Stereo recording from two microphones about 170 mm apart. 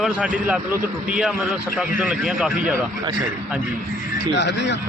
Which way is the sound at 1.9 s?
5° right (ahead or behind).